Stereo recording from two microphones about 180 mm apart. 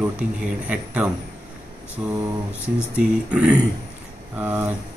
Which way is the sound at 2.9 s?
5° right (ahead or behind).